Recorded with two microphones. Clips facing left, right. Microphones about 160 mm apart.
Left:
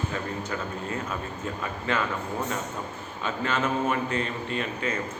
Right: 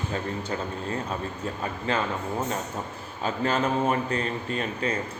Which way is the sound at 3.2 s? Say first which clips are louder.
Right 2 dB; 35° right (ahead or behind).